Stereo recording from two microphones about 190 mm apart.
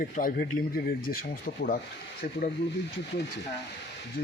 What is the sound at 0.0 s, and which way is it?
Speech, 50° left (ahead or behind).